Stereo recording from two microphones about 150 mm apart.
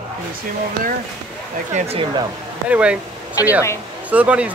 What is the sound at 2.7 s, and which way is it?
Speech, 10° right (ahead or behind).